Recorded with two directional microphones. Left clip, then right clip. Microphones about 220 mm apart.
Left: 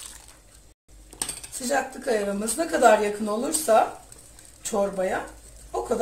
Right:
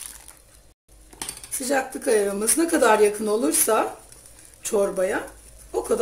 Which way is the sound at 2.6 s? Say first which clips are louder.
Right 1 dB; 45° right (ahead or behind).